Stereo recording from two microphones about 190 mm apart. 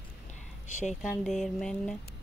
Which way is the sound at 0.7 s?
40° left (ahead or behind).